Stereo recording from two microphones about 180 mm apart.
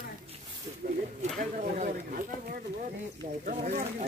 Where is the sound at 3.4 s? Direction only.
50° right (ahead or behind).